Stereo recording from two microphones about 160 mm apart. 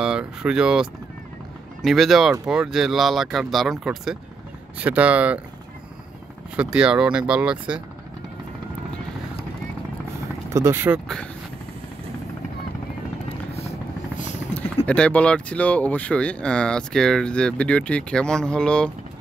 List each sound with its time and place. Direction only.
0.0 s speech: 5° right (ahead or behind)
6.5 s speech: 5° right (ahead or behind)
10.5 s speech: 15° right (ahead or behind)
13.6 s helicopter: 40° left (ahead or behind)
14.9 s speech: 5° left (ahead or behind)